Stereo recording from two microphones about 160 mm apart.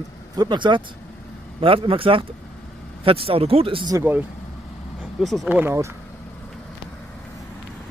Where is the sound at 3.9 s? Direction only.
15° right (ahead or behind).